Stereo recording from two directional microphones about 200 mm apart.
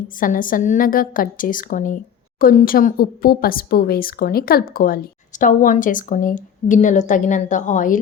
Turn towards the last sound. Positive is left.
turn(degrees=40)  # may be behind; listen again after turning